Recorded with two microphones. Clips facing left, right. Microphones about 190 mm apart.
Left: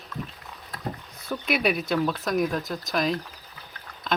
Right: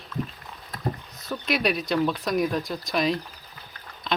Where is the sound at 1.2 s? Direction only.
5° left (ahead or behind).